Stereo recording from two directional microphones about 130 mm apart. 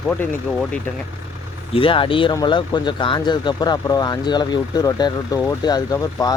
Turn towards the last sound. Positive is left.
turn(degrees=25)  # may be behind; listen again after turning